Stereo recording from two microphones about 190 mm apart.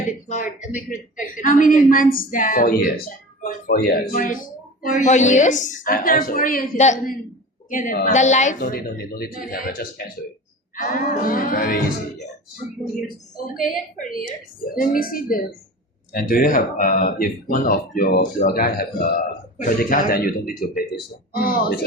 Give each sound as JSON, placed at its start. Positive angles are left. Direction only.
{"t": 0.3, "sound": "a woman's voice", "side_deg": 40}
{"t": 13.5, "sound": "a woman's voice", "side_deg": 45}